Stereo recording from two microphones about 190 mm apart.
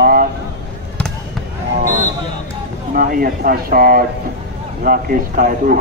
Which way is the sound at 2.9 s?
50° right (ahead or behind).